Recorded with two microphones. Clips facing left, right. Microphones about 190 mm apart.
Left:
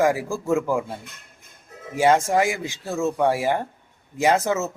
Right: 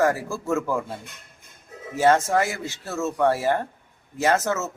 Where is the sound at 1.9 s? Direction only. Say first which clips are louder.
Left 1 dB; 15° left (ahead or behind).